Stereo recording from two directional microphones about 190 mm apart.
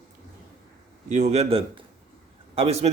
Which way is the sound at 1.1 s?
40° right (ahead or behind).